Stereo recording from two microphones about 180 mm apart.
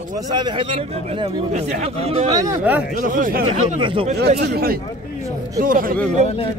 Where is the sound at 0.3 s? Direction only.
25° right (ahead or behind).